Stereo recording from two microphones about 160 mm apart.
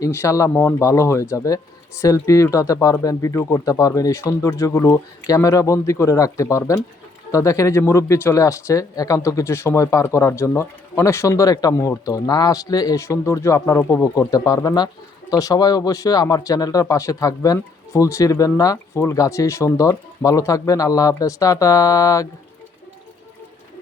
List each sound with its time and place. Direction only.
0.0 s speech: 20° left (ahead or behind)